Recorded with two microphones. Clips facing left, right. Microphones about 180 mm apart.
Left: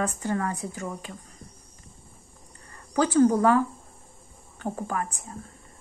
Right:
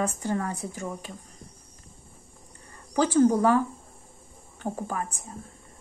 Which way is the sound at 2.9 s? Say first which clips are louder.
Even; 10° right (ahead or behind).